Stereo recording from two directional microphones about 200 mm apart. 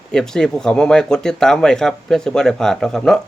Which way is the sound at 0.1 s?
5° left (ahead or behind).